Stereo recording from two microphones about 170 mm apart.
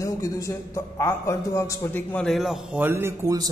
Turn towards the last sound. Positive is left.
turn(degrees=-20)  # may be behind; listen again after turning